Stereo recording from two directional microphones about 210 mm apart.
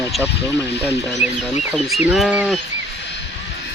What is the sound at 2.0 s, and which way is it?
Speech, 5° right (ahead or behind).